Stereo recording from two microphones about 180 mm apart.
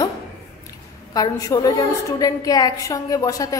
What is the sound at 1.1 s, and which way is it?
A woman's voice, 20° left (ahead or behind).